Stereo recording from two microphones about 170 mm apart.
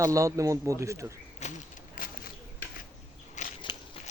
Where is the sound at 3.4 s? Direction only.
45° left (ahead or behind).